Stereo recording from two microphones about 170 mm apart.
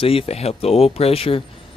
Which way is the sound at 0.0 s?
35° left (ahead or behind).